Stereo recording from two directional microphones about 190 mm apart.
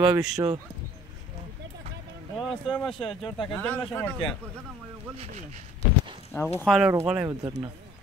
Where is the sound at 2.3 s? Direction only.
Centre (ahead or behind).